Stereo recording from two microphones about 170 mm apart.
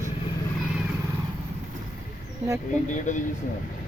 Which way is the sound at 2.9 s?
45° left (ahead or behind).